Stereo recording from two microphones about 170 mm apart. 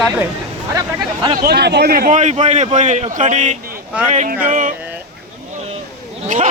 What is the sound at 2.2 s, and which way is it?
A man's voice, 40° right (ahead or behind).